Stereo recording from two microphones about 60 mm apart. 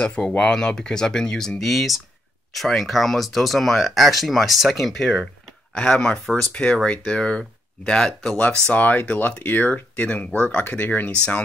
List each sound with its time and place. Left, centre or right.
0.0 s speech: centre
8.7 s speech: left